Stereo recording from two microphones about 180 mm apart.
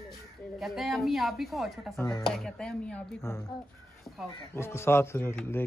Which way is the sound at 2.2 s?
Centre (ahead or behind).